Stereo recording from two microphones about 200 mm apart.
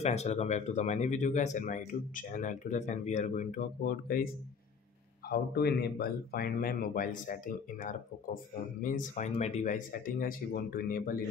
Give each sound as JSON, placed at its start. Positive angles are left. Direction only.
{"t": 0.0, "sound": "speech", "side_deg": 35}
{"t": 5.3, "sound": "speech", "side_deg": 50}